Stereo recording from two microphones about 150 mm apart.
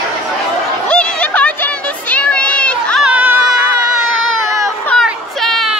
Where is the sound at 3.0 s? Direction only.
10° right (ahead or behind).